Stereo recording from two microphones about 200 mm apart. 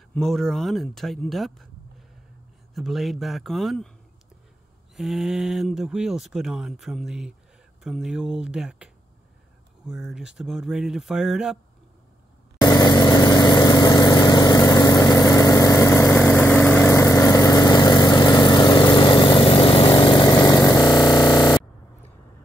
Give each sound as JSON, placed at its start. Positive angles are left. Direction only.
{"t": 0.1, "sound": "speech", "side_deg": 0}
{"t": 2.7, "sound": "speech", "side_deg": 0}
{"t": 4.9, "sound": "speech", "side_deg": 0}
{"t": 12.5, "sound": "vehicle", "side_deg": 20}
{"t": 21.3, "sound": "music", "side_deg": 20}